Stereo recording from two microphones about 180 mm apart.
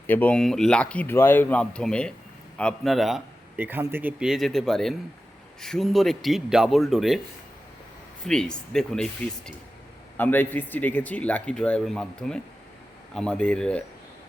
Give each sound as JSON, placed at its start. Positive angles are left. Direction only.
{"t": 0.1, "sound": "speech", "side_deg": 10}
{"t": 3.6, "sound": "speech", "side_deg": -10}
{"t": 8.2, "sound": "speech", "side_deg": 5}
{"t": 10.2, "sound": "speech", "side_deg": 10}